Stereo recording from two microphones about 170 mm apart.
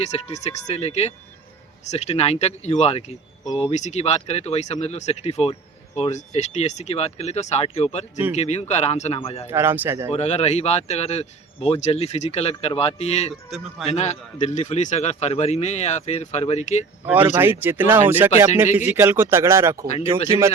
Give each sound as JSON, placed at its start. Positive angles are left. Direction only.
{"t": 0.0, "sound": "speech", "side_deg": 40}
{"t": 9.5, "sound": "speech", "side_deg": -15}
{"t": 10.1, "sound": "speech", "side_deg": 40}
{"t": 13.3, "sound": "a man's voice", "side_deg": 0}
{"t": 13.9, "sound": "speech", "side_deg": 40}
{"t": 17.3, "sound": "speech", "side_deg": -10}